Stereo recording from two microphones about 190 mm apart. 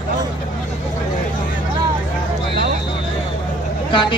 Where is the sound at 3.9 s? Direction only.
25° left (ahead or behind).